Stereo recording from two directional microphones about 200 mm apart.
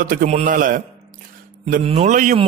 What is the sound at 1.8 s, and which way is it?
Speech, 35° right (ahead or behind).